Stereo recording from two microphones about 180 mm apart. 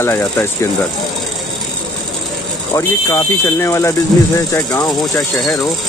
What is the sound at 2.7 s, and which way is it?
Speech, 15° left (ahead or behind).